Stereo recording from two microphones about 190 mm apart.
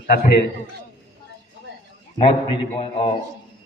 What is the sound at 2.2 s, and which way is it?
Speech, 25° left (ahead or behind).